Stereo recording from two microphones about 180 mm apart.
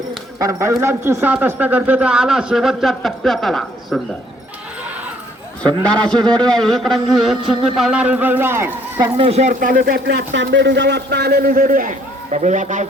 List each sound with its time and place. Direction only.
0.3 s a man's voice: 15° right (ahead or behind); by 4.0 s centre (ahead or behind)
6.1 s a man's voice: 25° right (ahead or behind)
6.5 s a sound: 5° left (ahead or behind)
7.8 s a man's voice: 5° right (ahead or behind)
9.1 s speech: 35° right (ahead or behind)